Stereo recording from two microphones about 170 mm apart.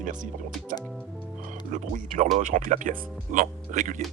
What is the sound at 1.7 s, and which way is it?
Speech, 45° right (ahead or behind).